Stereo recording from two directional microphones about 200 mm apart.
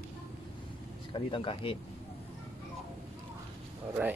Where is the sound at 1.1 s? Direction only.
25° left (ahead or behind).